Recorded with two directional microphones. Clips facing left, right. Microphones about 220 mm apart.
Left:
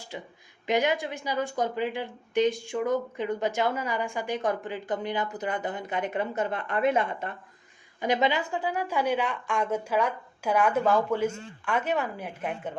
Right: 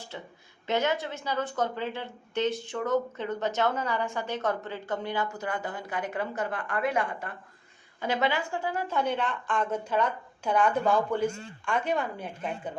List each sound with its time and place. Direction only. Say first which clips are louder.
0.1 s a woman's voice: left 6 dB; 15° left (ahead or behind)